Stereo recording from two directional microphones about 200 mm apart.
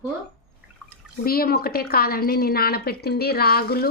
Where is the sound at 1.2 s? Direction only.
50° left (ahead or behind).